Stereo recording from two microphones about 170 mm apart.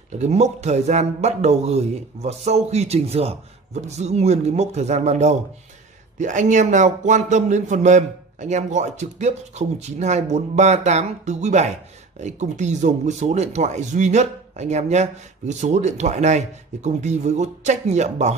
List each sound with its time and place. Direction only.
0.2 s a man's voice: 40° right (ahead or behind)